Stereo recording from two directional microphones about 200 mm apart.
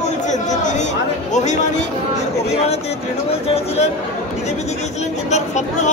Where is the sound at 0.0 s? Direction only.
35° left (ahead or behind).